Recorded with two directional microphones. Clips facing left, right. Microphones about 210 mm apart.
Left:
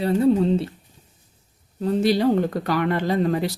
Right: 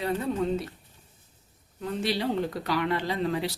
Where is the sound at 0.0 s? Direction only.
35° left (ahead or behind).